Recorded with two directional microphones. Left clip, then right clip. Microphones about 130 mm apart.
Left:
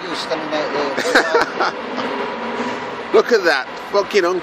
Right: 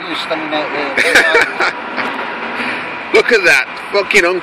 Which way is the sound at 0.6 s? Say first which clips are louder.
Right 5 dB; 5° right (ahead or behind).